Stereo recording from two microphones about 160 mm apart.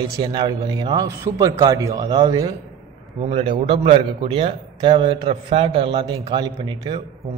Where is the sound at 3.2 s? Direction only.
35° right (ahead or behind).